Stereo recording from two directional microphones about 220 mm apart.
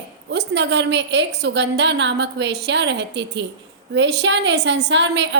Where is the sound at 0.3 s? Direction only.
50° right (ahead or behind).